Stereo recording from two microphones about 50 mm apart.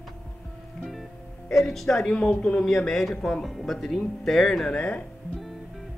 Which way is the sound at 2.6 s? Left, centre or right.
Centre.